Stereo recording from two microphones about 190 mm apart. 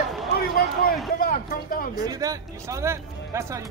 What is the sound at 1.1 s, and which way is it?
Speech, 50° left (ahead or behind).